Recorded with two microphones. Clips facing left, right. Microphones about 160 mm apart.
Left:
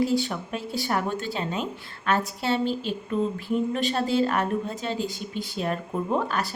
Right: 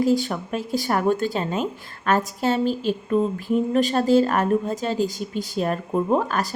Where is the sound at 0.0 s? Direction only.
45° right (ahead or behind).